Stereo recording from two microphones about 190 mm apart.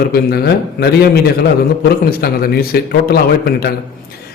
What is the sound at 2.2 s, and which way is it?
A man's voice, 55° left (ahead or behind).